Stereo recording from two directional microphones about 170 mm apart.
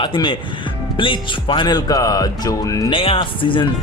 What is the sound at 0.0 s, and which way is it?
Speech, 30° left (ahead or behind).